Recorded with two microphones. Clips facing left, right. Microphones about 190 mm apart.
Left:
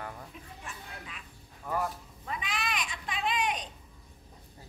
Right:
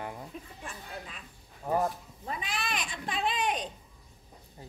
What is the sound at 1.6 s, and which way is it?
Speech, 30° right (ahead or behind).